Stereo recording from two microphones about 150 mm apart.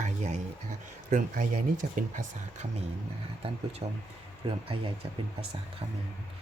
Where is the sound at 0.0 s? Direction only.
55° right (ahead or behind).